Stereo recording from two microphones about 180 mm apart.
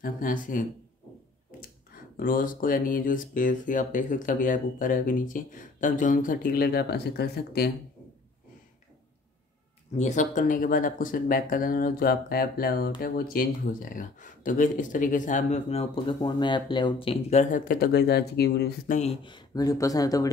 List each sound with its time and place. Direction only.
0.0 s speech: 50° left (ahead or behind)
2.1 s speech: 50° left (ahead or behind)
9.9 s speech: 40° left (ahead or behind); by 18.7 s 65° left (ahead or behind)
18.9 s speech: 40° left (ahead or behind)
19.2 s speech: 25° left (ahead or behind)